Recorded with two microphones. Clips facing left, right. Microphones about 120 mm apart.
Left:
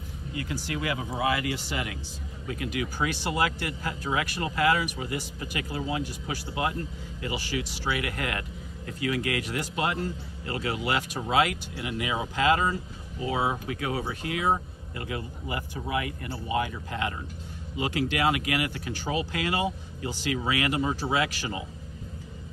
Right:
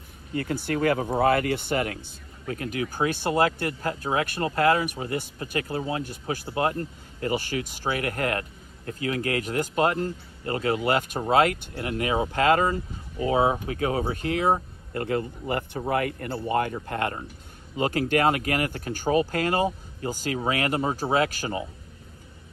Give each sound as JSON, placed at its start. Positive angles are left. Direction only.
{"t": 0.3, "sound": "speech", "side_deg": -45}
{"t": 13.2, "sound": "speech", "side_deg": -35}